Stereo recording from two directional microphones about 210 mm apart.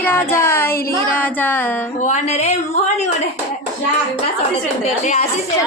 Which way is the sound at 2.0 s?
35° left (ahead or behind).